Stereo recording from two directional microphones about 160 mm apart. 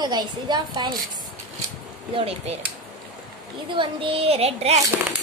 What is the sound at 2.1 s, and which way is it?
Speech, 40° right (ahead or behind).